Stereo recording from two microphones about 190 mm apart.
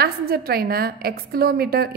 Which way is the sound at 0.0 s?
55° right (ahead or behind).